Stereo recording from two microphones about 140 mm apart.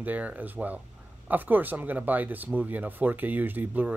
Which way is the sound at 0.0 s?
10° right (ahead or behind).